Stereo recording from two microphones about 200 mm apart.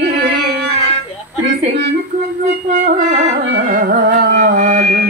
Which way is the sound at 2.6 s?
35° right (ahead or behind).